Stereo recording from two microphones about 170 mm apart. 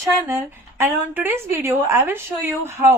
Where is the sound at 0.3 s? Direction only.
15° right (ahead or behind).